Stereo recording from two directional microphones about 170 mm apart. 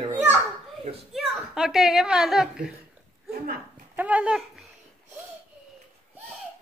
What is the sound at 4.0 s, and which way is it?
Speech, 10° right (ahead or behind).